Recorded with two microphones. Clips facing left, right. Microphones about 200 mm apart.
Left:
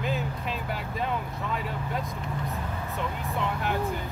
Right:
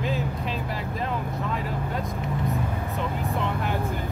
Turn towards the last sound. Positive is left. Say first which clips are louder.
# right 2 dB
turn(degrees=0)  # may be behind; listen again after turning